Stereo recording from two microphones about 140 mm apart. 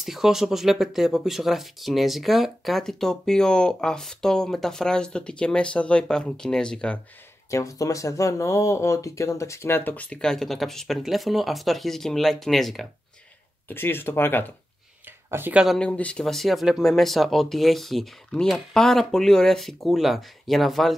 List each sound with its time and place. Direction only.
0.0 s speech: centre (ahead or behind)
7.5 s speech: 20° left (ahead or behind); by 12.8 s centre (ahead or behind)
13.7 s speech: 15° left (ahead or behind)
15.3 s speech: 15° right (ahead or behind)
15.6 s speech: 5° left (ahead or behind)